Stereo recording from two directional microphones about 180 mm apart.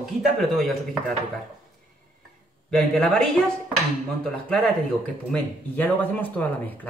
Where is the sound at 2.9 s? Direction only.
5° left (ahead or behind).